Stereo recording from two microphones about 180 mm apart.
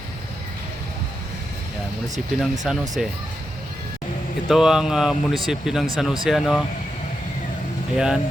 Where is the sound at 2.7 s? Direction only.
5° right (ahead or behind).